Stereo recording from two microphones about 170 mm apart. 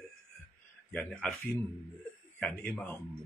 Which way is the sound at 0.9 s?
5° left (ahead or behind).